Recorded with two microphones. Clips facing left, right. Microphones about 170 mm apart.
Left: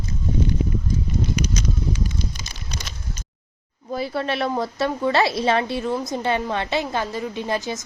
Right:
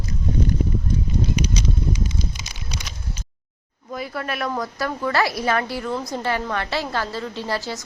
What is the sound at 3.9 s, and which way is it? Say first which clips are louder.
A woman's voice: left 4 dB; 30° left (ahead or behind).